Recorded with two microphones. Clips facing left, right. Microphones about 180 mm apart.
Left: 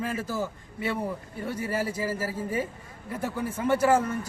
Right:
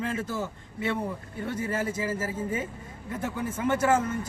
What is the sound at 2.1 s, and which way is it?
Speech, 25° right (ahead or behind).